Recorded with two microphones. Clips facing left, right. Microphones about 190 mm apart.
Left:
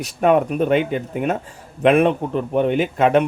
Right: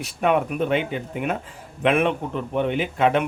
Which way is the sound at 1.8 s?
40° left (ahead or behind).